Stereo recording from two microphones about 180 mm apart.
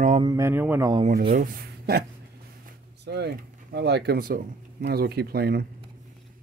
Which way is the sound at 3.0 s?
65° right (ahead or behind).